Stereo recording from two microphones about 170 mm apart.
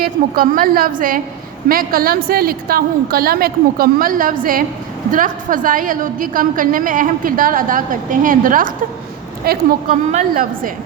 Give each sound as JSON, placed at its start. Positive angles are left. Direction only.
{"t": 0.0, "sound": "a woman's voice", "side_deg": -60}
{"t": 10.1, "sound": "a woman's voice", "side_deg": -50}